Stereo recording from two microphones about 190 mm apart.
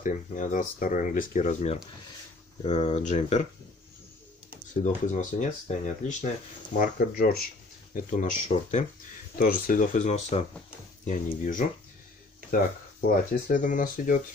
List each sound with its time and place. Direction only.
0.0 s speech: 40° left (ahead or behind)
4.8 s speech: 40° left (ahead or behind)
7.9 s speech: 40° left (ahead or behind)
13.1 s speech: 45° left (ahead or behind)